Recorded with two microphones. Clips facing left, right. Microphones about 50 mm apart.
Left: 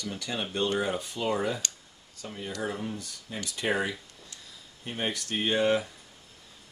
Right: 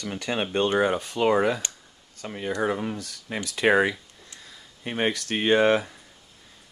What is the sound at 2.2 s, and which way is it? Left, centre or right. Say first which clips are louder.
Speech: right 8 dB; right.